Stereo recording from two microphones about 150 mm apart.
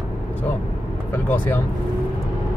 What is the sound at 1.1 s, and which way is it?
Vehicle, 10° left (ahead or behind).